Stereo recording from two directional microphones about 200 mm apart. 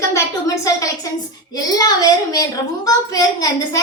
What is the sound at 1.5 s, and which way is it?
A woman's voice, 20° left (ahead or behind).